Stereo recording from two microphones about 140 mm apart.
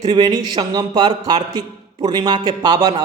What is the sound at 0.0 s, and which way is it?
Speech, 30° right (ahead or behind).